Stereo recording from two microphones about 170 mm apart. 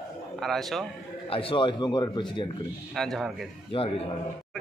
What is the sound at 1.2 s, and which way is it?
Speech, 35° left (ahead or behind).